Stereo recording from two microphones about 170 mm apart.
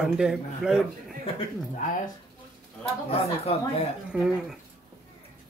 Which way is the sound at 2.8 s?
35° left (ahead or behind).